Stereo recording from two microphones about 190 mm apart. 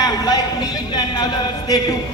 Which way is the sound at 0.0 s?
20° left (ahead or behind).